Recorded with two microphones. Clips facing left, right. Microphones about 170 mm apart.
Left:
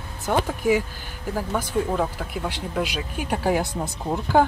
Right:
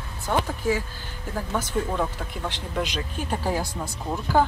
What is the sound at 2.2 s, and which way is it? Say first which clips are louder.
Speech: left 3 dB; 5° left (ahead or behind).